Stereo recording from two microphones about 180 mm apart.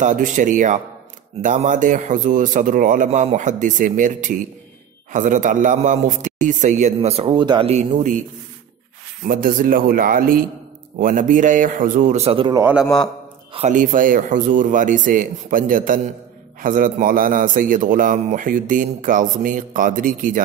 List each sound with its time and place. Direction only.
0.0 s a man's voice: 45° right (ahead or behind)
9.2 s a man's voice: 50° right (ahead or behind); by 12.5 s 30° right (ahead or behind)
12.5 s a man's voice: 10° right (ahead or behind)
13.5 s a man's voice: 40° right (ahead or behind)